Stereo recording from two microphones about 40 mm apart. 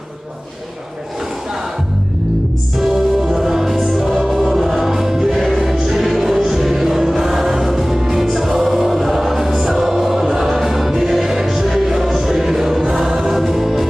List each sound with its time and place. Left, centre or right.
2.7 s music: centre